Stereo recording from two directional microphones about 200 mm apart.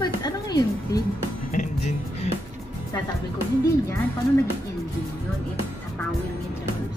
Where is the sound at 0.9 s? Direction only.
20° left (ahead or behind).